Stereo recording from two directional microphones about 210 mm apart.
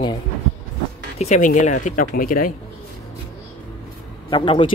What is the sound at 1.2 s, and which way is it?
Speech, 35° left (ahead or behind).